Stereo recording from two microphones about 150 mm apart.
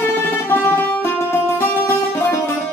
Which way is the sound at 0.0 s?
15° left (ahead or behind).